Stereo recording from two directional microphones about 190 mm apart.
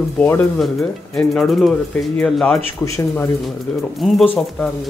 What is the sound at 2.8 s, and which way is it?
Speech, 15° left (ahead or behind).